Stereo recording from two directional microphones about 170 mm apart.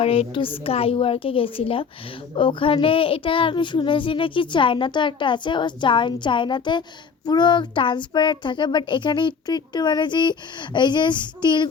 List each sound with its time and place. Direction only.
0.0 s a woman's voice: 35° left (ahead or behind)